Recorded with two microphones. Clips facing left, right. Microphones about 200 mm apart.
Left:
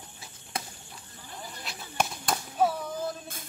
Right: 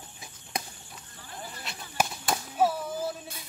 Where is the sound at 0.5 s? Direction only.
15° right (ahead or behind).